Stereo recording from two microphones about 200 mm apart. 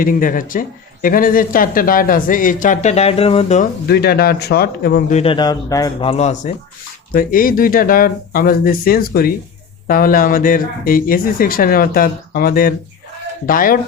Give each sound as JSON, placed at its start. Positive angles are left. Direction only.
{"t": 0.0, "sound": "speech", "side_deg": 45}
{"t": 3.8, "sound": "a man's voice", "side_deg": 50}